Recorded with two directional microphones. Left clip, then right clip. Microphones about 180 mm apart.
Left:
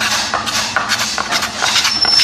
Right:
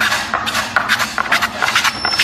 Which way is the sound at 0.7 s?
5° right (ahead or behind).